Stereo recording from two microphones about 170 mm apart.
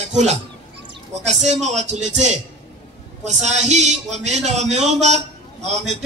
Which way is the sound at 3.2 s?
40° right (ahead or behind).